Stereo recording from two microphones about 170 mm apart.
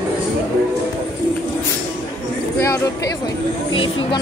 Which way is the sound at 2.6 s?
20° left (ahead or behind).